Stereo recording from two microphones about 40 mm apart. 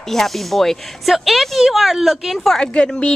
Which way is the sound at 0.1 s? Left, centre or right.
Centre.